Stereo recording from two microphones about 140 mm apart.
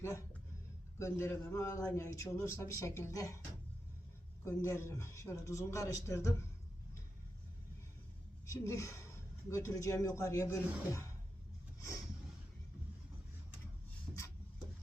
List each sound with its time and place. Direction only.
0.9 s a man's voice: 20° left (ahead or behind)
4.4 s a man's voice: 20° left (ahead or behind)
8.4 s a man's voice: 20° left (ahead or behind)
14.1 s a sound: 15° right (ahead or behind)